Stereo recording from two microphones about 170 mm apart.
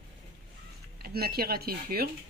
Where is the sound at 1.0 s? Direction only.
65° right (ahead or behind).